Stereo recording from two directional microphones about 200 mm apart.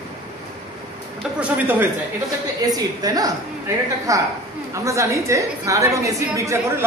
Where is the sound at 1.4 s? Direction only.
10° right (ahead or behind).